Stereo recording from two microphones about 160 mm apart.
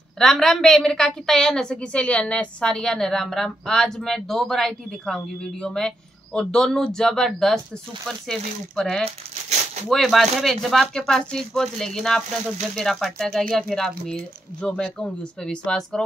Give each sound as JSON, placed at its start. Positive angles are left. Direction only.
{"t": 0.2, "sound": "a woman's voice", "side_deg": 0}
{"t": 9.0, "sound": "speech", "side_deg": -45}
{"t": 9.8, "sound": "a woman's voice", "side_deg": 0}